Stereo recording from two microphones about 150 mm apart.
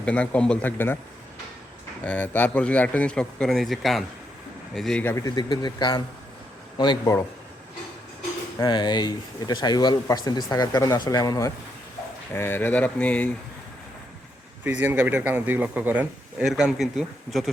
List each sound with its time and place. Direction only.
0.0 s speech: 10° left (ahead or behind)
2.0 s speech: 10° left (ahead or behind)
5.1 s speech: 25° left (ahead or behind)
8.5 s speech: 30° left (ahead or behind); by 13.3 s 10° left (ahead or behind)
14.6 s speech: 10° right (ahead or behind)